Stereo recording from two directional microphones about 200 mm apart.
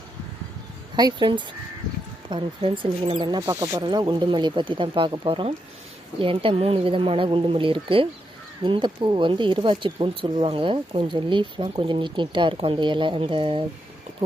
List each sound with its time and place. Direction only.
0.9 s speech: 20° right (ahead or behind)